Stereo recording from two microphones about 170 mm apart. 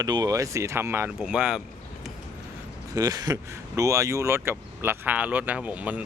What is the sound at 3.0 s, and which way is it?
Speech, 20° right (ahead or behind).